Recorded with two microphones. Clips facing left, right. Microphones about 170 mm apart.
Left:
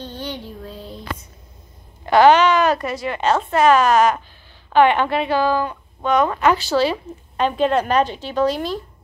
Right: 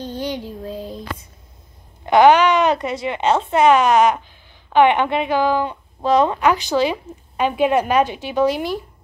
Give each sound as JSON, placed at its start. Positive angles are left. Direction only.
{"t": 0.0, "sound": "child singing", "side_deg": -15}
{"t": 0.7, "sound": "a sound", "side_deg": -15}
{"t": 2.0, "sound": "a woman's voice", "side_deg": -15}
{"t": 6.4, "sound": "a woman's voice", "side_deg": -15}